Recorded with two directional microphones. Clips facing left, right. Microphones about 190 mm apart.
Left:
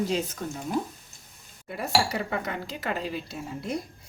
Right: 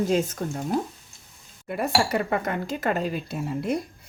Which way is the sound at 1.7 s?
55° right (ahead or behind).